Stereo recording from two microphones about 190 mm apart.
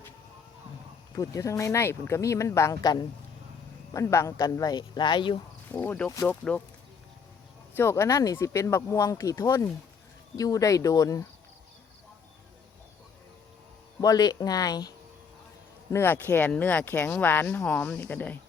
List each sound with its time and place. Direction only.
1.1 s a woman's voice: 15° left (ahead or behind)
5.7 s speech: 10° left (ahead or behind)
7.8 s speech: 15° left (ahead or behind)
14.0 s a woman's voice: 20° left (ahead or behind)